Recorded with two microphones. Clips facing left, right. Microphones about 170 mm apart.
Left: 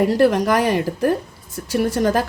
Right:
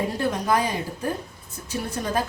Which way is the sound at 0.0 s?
85° left.